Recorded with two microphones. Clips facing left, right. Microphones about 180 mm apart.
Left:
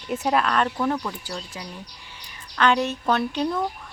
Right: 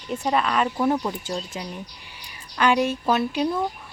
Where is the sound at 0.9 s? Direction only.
25° right (ahead or behind).